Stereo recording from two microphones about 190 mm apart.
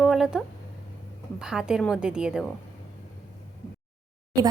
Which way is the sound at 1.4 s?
5° right (ahead or behind).